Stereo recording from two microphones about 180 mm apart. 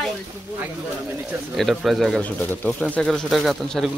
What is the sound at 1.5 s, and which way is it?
Speech, centre (ahead or behind).